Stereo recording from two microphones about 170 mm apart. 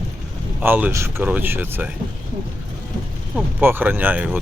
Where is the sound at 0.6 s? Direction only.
10° right (ahead or behind).